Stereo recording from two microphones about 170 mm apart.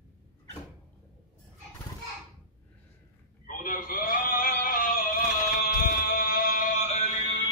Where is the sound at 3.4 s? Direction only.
50° left (ahead or behind).